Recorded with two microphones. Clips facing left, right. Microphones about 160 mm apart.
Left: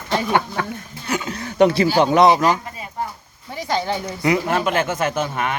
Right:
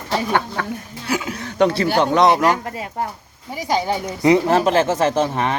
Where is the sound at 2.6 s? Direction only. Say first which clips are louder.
Right 3 dB; 65° right (ahead or behind).